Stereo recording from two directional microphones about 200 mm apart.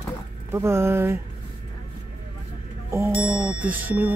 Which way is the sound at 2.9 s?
15° right (ahead or behind).